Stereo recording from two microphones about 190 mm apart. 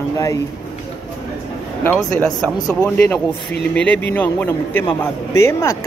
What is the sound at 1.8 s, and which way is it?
A man's voice, 5° left (ahead or behind).